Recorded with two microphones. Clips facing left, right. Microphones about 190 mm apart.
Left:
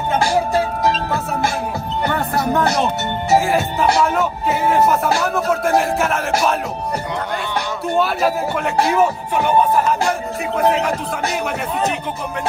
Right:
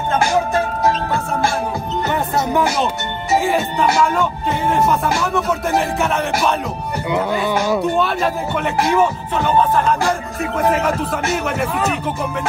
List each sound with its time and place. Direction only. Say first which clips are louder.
2.0 s music: left 1 dB; 20° right (ahead or behind)
2.8 s speech: left 1 dB; centre (ahead or behind)
7.8 s speech: even; centre (ahead or behind)
8.8 s music: even; 10° left (ahead or behind)
10.4 s speech: even; centre (ahead or behind)